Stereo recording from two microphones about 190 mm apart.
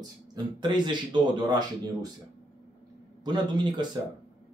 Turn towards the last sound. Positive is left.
turn(degrees=-25)  # may be behind; listen again after turning